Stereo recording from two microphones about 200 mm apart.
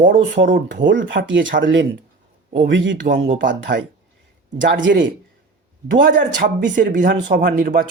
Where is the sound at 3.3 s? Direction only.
45° right (ahead or behind).